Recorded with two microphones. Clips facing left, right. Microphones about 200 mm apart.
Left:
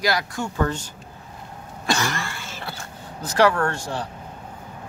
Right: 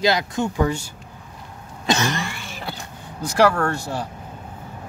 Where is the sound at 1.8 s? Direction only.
20° right (ahead or behind).